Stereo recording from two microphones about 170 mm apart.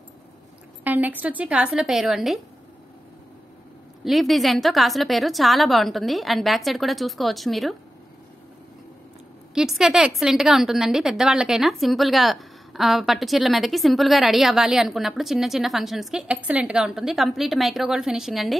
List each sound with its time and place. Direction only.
0.8 s speech: 10° right (ahead or behind)
4.0 s a woman's voice: centre (ahead or behind)
9.5 s a woman's voice: 5° right (ahead or behind)